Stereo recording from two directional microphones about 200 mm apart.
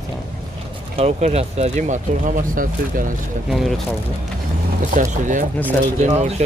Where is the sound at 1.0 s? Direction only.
35° right (ahead or behind).